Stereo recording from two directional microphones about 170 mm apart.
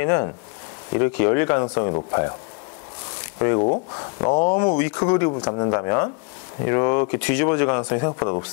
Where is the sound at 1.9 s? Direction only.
25° left (ahead or behind).